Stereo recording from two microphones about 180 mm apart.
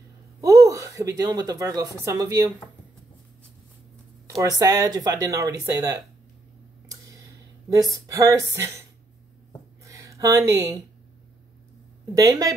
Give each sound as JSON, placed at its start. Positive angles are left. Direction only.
{"t": 0.4, "sound": "a woman's voice", "side_deg": -20}
{"t": 4.4, "sound": "speech", "side_deg": -20}
{"t": 6.9, "sound": "tick", "side_deg": -20}
{"t": 7.7, "sound": "speech", "side_deg": -20}
{"t": 9.8, "sound": "a sound", "side_deg": -15}
{"t": 12.1, "sound": "speech", "side_deg": -20}